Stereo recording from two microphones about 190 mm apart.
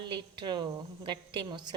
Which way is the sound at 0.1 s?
25° right (ahead or behind).